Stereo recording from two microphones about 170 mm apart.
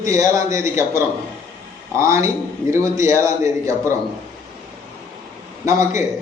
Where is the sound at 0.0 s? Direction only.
20° right (ahead or behind).